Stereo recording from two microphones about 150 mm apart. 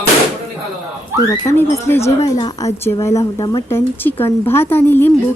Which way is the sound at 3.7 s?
15° left (ahead or behind).